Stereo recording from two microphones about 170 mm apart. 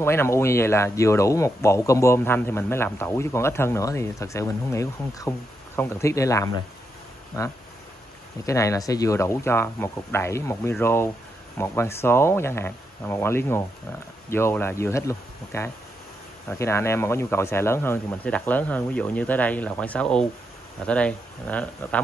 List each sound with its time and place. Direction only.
0.0 s speech: 15° left (ahead or behind)
8.5 s speech: 20° left (ahead or behind)